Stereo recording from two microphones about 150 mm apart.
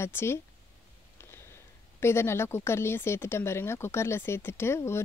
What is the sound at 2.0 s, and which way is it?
Speech, 15° left (ahead or behind).